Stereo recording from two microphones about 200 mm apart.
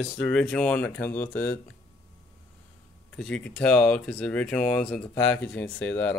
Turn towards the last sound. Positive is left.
turn(degrees=5)  # may be behind; listen again after turning